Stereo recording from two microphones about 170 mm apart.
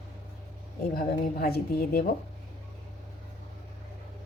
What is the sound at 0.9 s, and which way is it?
A woman's voice, 55° left (ahead or behind).